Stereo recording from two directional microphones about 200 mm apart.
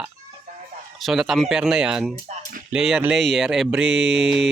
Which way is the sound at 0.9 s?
Centre (ahead or behind).